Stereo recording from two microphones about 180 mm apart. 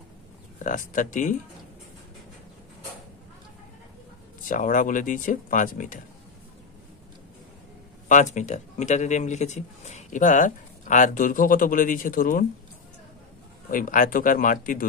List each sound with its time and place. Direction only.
0.7 s speech: 45° left (ahead or behind)
4.5 s speech: 45° left (ahead or behind)
8.1 s speech: 45° left (ahead or behind)
13.7 s speech: 50° left (ahead or behind)